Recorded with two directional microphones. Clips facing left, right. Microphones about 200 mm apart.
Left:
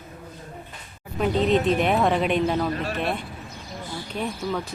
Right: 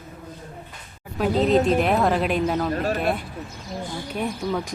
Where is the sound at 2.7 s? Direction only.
45° right (ahead or behind).